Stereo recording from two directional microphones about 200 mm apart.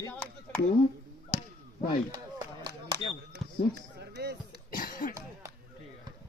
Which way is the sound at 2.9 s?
55° right (ahead or behind).